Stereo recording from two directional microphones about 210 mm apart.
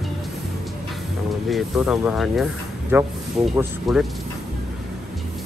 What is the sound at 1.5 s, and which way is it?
Speech, centre (ahead or behind).